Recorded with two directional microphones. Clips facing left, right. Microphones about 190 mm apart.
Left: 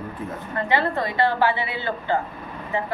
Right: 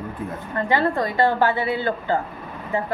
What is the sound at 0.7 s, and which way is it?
A woman's voice, 45° right (ahead or behind).